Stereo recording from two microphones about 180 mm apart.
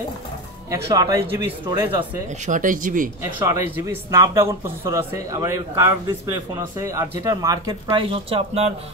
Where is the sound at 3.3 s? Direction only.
15° right (ahead or behind); by 8.7 s 35° right (ahead or behind).